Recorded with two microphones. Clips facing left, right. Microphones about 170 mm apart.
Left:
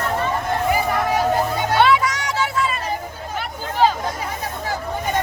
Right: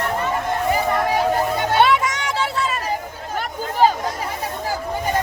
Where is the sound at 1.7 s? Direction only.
25° right (ahead or behind).